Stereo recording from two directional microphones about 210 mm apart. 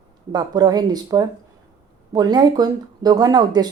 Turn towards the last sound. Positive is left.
turn(degrees=-20)  # may be behind; listen again after turning